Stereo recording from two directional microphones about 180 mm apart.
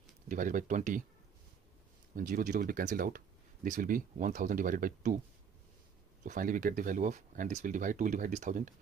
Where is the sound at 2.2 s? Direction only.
50° right (ahead or behind).